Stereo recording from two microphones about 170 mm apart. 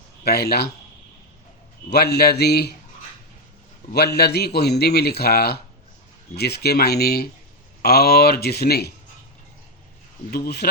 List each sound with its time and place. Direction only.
0.3 s a man's voice: 65° left (ahead or behind)
1.9 s a man's voice: 70° left (ahead or behind)
3.9 s a man's voice: 70° left (ahead or behind)
10.3 s a man's voice: 70° left (ahead or behind)